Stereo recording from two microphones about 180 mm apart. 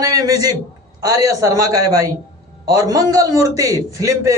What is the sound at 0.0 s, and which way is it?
A man's voice, 20° right (ahead or behind).